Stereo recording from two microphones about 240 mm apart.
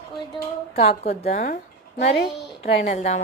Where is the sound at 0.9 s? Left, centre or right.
Left.